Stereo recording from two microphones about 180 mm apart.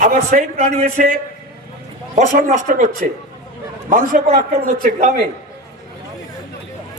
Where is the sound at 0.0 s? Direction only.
40° right (ahead or behind).